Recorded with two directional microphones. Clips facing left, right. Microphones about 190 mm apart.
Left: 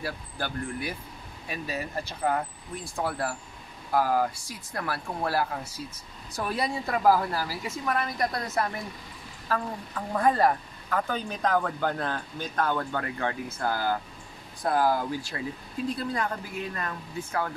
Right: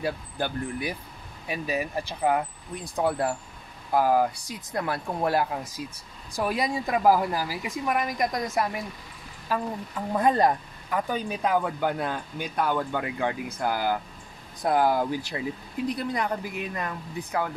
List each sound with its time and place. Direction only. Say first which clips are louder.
0.0 s speech: right 5 dB; 15° right (ahead or behind)